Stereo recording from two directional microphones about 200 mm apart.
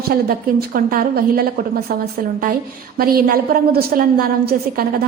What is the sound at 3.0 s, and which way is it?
A woman's voice, 50° right (ahead or behind).